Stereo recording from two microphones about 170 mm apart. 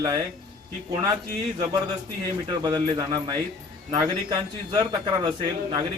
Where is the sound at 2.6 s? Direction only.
25° right (ahead or behind).